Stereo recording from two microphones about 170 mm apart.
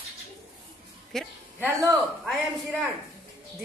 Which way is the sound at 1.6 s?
20° right (ahead or behind).